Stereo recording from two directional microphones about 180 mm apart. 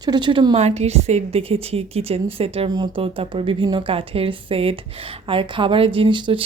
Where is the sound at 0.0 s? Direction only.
25° right (ahead or behind).